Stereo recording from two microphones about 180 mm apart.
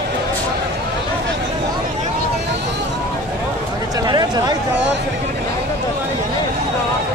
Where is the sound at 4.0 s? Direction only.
20° right (ahead or behind).